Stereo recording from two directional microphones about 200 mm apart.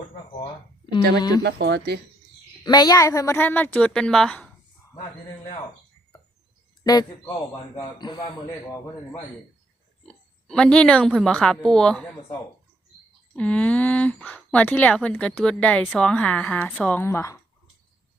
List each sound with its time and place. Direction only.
1.4 s speech: 55° right (ahead or behind)
2.6 s speech: 20° left (ahead or behind); by 4.4 s 5° left (ahead or behind)
6.8 s a man's voice: 20° left (ahead or behind)
10.1 s speech: 5° left (ahead or behind)